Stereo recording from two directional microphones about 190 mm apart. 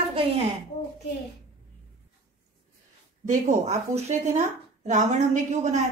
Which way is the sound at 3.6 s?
35° right (ahead or behind).